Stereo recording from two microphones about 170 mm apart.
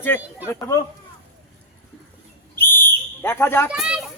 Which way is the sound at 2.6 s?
15° left (ahead or behind).